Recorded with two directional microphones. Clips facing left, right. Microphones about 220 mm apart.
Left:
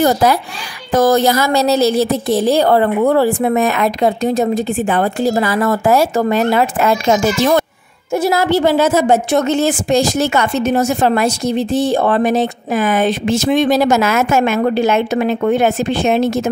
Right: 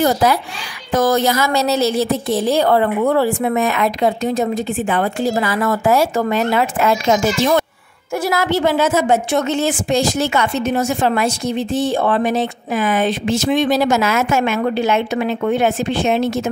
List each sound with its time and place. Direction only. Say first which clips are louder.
0.0 s a child's voice: left 2 dB; 45° left (ahead or behind)
8.1 s a woman's voice: left 4 dB; 25° left (ahead or behind); by 16.4 s 45° left (ahead or behind)